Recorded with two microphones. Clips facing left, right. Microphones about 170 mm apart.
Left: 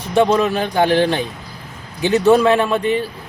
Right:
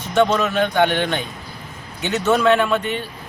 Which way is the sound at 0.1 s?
35° left (ahead or behind).